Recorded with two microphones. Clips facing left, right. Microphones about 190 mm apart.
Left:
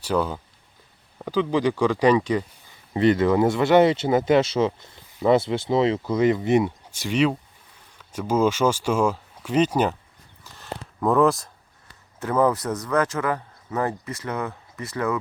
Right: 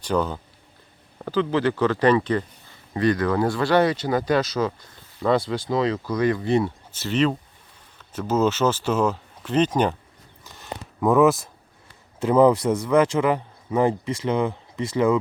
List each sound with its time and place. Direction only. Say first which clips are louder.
0.0 s speech: even; 10° left (ahead or behind)
2.9 s speech: left 3 dB; 25° left (ahead or behind)
10.6 s a sound: right 2 dB; 5° right (ahead or behind)
12.2 s speech: right 5 dB; 15° right (ahead or behind)